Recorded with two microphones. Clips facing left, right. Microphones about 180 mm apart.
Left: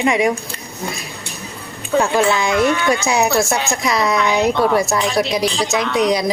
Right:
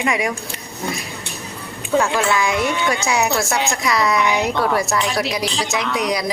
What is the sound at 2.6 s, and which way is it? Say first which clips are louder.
Speech: left 4 dB; 20° right (ahead or behind).